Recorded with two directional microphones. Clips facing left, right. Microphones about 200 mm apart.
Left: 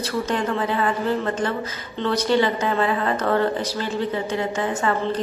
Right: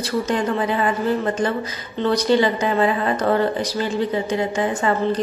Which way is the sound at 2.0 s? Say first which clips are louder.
Right 3 dB; 15° right (ahead or behind).